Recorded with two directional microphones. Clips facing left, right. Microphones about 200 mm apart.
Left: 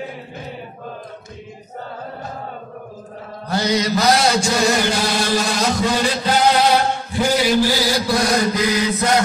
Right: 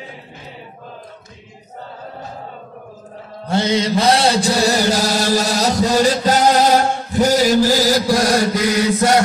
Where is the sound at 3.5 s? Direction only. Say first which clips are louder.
Right 2 dB; 25° right (ahead or behind); by 9.2 s 45° right (ahead or behind).